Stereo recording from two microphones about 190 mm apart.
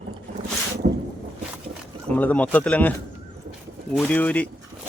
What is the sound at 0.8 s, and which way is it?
Boat, 40° right (ahead or behind).